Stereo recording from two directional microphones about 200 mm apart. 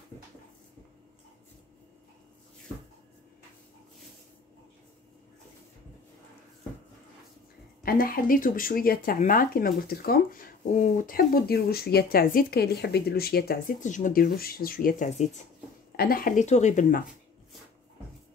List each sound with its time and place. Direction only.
7.8 s speech: 45° left (ahead or behind)